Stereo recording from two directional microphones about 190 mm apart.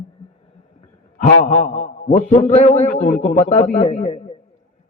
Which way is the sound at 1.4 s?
45° left (ahead or behind).